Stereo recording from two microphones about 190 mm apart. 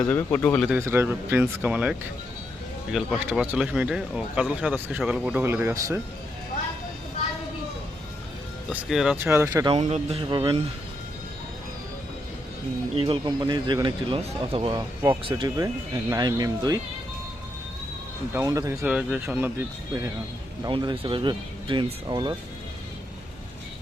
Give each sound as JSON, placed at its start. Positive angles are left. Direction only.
{"t": 0.1, "sound": "speech", "side_deg": 10}
{"t": 0.7, "sound": "speech", "side_deg": -10}
{"t": 8.7, "sound": "speech", "side_deg": -5}
{"t": 9.7, "sound": "speech", "side_deg": -30}
{"t": 13.0, "sound": "speech", "side_deg": -25}
{"t": 18.3, "sound": "speech", "side_deg": -20}
{"t": 18.9, "sound": "speech", "side_deg": -5}
{"t": 20.7, "sound": "speech", "side_deg": -25}